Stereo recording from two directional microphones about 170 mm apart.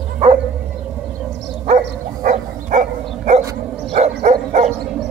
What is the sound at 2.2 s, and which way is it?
Dog, 50° right (ahead or behind).